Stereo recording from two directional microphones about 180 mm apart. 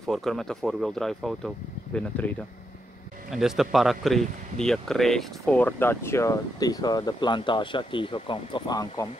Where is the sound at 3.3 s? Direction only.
Centre (ahead or behind); by 9.1 s 25° left (ahead or behind).